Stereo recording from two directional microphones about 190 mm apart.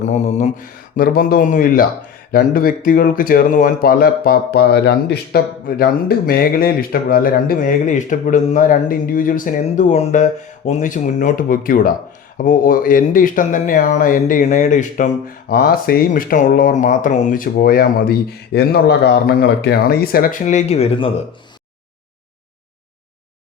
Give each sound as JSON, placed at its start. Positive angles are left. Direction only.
{"t": 0.0, "sound": "mantra", "side_deg": 35}
{"t": 0.9, "sound": "speech", "side_deg": 50}